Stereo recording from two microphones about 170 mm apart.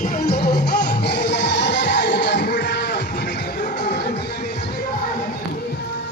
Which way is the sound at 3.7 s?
90° left.